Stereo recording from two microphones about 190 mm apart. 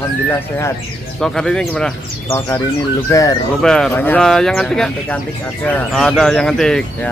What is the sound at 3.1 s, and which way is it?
Speech, 15° left (ahead or behind).